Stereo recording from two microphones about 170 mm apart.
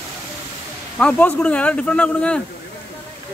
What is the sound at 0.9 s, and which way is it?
Speech, 5° left (ahead or behind).